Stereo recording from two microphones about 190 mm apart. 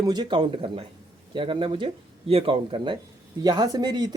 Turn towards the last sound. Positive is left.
turn(degrees=-20)  # may be behind; listen again after turning